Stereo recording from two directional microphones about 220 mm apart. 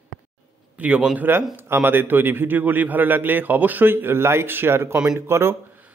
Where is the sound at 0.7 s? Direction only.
5° right (ahead or behind).